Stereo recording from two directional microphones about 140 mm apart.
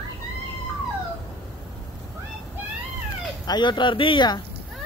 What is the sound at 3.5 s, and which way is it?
Speech, 35° left (ahead or behind).